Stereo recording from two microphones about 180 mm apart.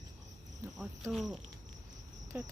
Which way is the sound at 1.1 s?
Centre (ahead or behind).